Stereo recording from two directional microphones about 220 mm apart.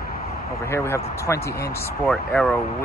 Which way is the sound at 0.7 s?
10° left (ahead or behind).